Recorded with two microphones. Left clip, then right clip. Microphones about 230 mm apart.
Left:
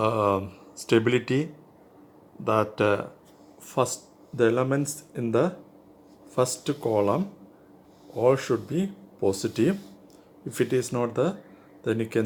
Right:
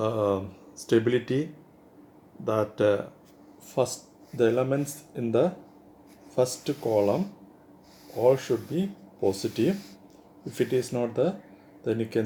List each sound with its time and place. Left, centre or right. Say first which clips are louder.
0.0 s speech: left 3 dB; left
8.2 s speech: even; left